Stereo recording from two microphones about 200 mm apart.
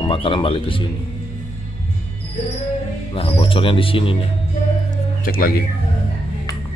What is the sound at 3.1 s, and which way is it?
Speech, 25° left (ahead or behind).